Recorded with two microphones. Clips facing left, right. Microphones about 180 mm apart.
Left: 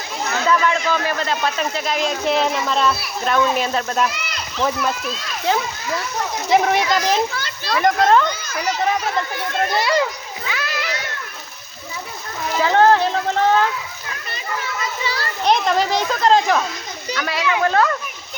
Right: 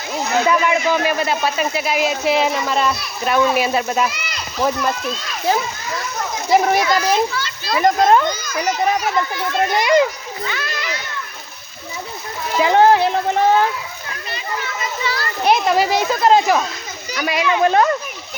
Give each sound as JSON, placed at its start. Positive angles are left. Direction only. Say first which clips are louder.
{"t": 0.4, "sound": "speech", "louder": "left 1 dB", "side_deg": -15}
{"t": 9.6, "sound": "a child's voice", "louder": "right 4 dB", "side_deg": -20}
{"t": 10.4, "sound": "a child's voice", "louder": "even", "side_deg": 5}
{"t": 12.5, "sound": "speech", "louder": "right 2 dB", "side_deg": -15}
{"t": 15.4, "sound": "a child's voice", "louder": "right 2 dB", "side_deg": -10}